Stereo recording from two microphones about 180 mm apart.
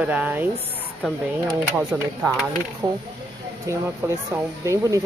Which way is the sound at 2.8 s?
20° right (ahead or behind).